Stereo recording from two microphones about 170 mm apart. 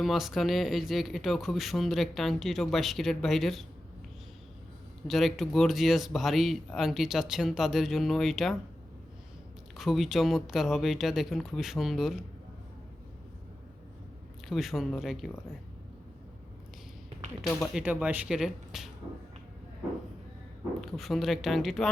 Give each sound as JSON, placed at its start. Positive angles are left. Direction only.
{"t": 0.0, "sound": "speech", "side_deg": 0}
{"t": 5.0, "sound": "speech", "side_deg": 0}
{"t": 9.7, "sound": "speech", "side_deg": 0}
{"t": 14.4, "sound": "speech", "side_deg": 0}
{"t": 17.4, "sound": "speech", "side_deg": 0}
{"t": 20.9, "sound": "speech", "side_deg": 0}